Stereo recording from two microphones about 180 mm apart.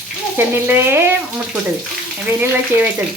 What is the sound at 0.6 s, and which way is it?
Speech, 10° right (ahead or behind).